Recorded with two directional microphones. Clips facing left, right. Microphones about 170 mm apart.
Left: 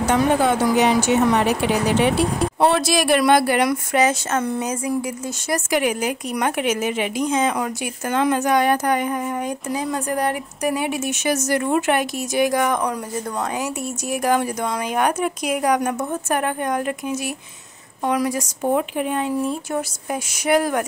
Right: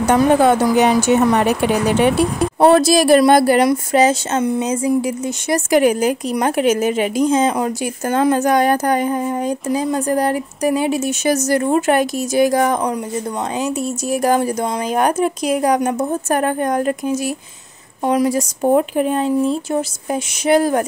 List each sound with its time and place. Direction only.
0.1 s a woman's voice: 50° right (ahead or behind)
2.6 s a woman's voice: 40° right (ahead or behind)
5.7 s a woman's voice: 40° right (ahead or behind)
18.6 s speech: 40° right (ahead or behind)